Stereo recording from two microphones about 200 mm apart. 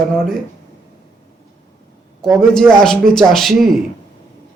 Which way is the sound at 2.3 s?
Centre (ahead or behind).